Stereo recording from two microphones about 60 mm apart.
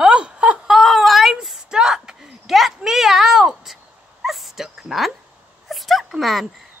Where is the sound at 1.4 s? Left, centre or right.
Centre.